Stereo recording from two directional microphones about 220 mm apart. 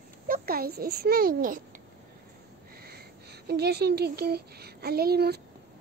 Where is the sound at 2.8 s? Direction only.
45° right (ahead or behind).